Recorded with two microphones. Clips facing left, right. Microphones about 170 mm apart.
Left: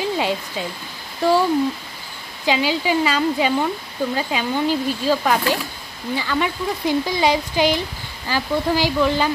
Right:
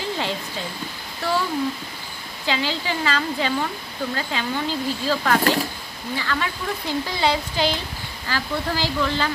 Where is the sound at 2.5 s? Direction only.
15° left (ahead or behind).